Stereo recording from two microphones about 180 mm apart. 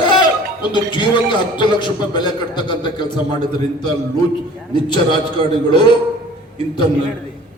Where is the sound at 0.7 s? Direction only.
25° left (ahead or behind).